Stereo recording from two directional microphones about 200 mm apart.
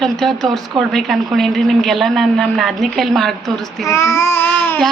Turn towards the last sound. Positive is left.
turn(degrees=10)  # may be behind; listen again after turning